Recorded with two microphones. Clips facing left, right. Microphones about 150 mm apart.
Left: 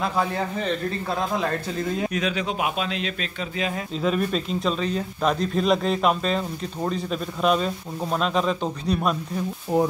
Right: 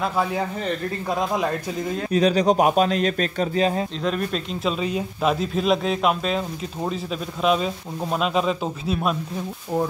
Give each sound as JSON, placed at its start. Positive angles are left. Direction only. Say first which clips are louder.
{"t": 0.0, "sound": "speech", "louder": "right 1 dB", "side_deg": -5}
{"t": 2.0, "sound": "speech", "louder": "right 8 dB", "side_deg": -35}
{"t": 4.0, "sound": "speech", "louder": "left 1 dB", "side_deg": 5}